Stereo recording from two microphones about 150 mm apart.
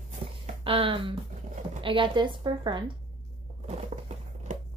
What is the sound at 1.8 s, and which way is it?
A woman's voice, 35° right (ahead or behind).